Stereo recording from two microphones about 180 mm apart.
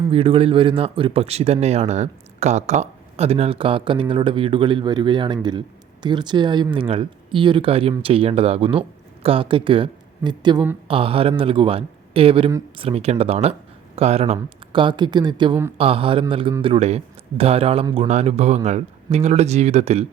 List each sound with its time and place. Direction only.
0.1 s speech: 30° right (ahead or behind)